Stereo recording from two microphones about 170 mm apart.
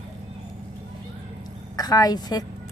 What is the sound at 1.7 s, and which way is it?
Speech, 20° left (ahead or behind).